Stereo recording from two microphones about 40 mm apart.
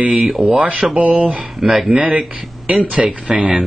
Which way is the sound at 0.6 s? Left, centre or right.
Right.